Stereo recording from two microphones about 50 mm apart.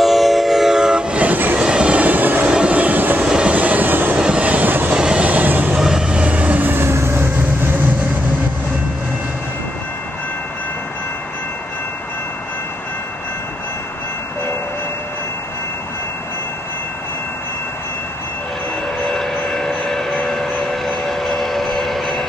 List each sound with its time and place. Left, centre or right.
0.0 s train: centre
1.2 s train: right
1.6 s vehicle: centre; by 2.5 s right
2.5 s train: right
3.3 s vehicle: centre
3.5 s vehicle: right
4.2 s train: right
4.9 s train: centre
5.2 s vehicle: right
5.8 s vehicle: centre
6.2 s vehicle: right
18.9 s train: centre